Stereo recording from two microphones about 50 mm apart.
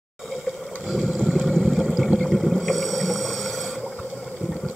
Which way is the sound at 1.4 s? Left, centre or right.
Centre.